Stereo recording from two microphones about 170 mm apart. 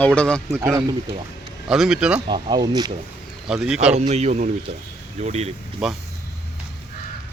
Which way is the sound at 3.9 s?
40° right (ahead or behind).